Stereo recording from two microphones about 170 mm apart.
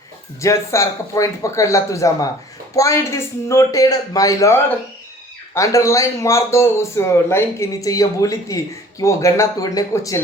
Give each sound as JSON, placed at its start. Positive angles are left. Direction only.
{"t": 0.4, "sound": "a man's voice", "side_deg": 15}